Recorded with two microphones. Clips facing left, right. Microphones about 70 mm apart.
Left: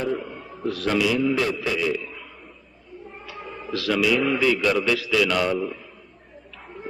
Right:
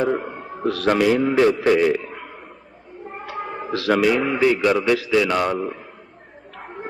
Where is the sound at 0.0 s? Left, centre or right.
Right.